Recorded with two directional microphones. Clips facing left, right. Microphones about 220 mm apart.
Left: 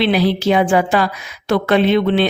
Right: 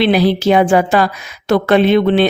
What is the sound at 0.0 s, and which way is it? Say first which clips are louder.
Speech: right 3 dB; 45° right (ahead or behind).